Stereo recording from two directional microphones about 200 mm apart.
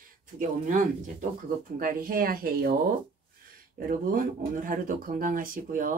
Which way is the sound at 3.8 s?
45° right (ahead or behind).